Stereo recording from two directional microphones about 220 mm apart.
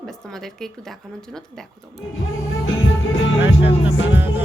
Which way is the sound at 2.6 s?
65° left (ahead or behind).